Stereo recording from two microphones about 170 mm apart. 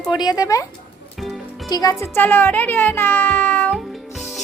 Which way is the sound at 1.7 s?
20° left (ahead or behind).